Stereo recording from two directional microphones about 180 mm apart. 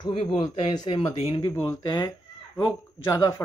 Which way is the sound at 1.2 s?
20° left (ahead or behind).